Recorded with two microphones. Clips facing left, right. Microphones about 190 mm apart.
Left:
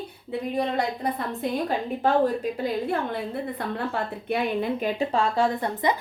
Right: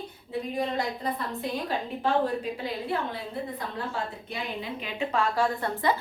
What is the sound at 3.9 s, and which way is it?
A woman's voice, 55° left (ahead or behind).